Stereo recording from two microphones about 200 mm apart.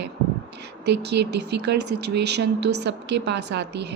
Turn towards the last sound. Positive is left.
turn(degrees=-60)  # may be behind; listen again after turning